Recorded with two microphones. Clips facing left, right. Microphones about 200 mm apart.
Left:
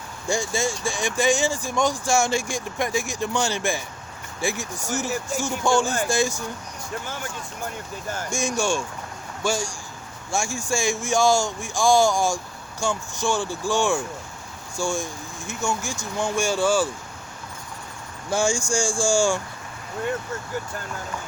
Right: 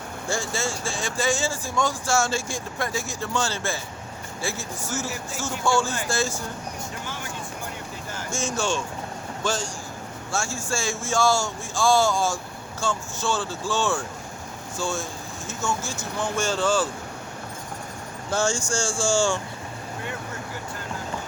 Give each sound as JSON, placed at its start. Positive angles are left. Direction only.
{"t": 0.3, "sound": "speech", "side_deg": 15}
{"t": 8.3, "sound": "speech", "side_deg": 15}
{"t": 18.3, "sound": "speech", "side_deg": 10}